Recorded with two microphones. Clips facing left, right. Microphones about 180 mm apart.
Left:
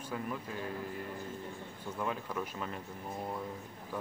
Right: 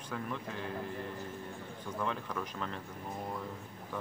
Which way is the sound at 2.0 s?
5° left (ahead or behind).